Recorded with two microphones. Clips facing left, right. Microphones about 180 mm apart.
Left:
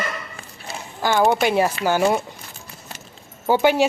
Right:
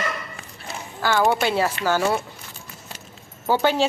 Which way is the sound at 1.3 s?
15° left (ahead or behind).